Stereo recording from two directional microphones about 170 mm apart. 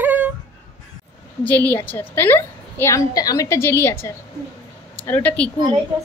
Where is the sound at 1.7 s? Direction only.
10° left (ahead or behind).